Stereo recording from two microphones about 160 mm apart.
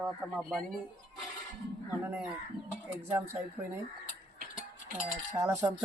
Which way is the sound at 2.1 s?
5° right (ahead or behind).